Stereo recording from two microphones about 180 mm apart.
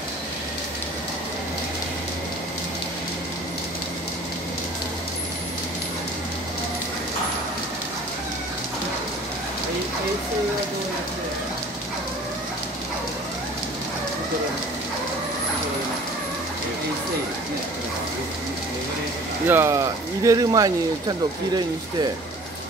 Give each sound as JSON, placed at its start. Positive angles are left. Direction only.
{"t": 19.4, "sound": "speech", "side_deg": -15}